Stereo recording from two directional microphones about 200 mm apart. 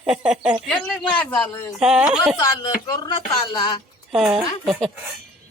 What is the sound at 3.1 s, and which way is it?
Speech, 20° left (ahead or behind).